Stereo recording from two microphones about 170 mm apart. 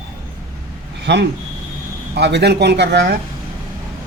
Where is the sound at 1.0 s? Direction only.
85° right.